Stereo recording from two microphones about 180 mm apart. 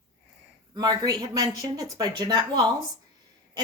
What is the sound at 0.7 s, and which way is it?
Speech, 20° right (ahead or behind).